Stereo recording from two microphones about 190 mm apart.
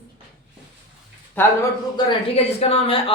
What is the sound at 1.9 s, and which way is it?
Speech, 30° left (ahead or behind).